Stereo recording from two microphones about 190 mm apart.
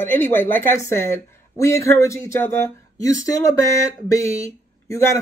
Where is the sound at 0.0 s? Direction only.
10° left (ahead or behind).